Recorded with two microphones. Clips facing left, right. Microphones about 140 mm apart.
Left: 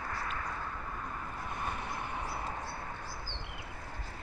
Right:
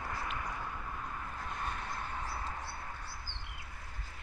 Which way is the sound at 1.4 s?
10° left (ahead or behind).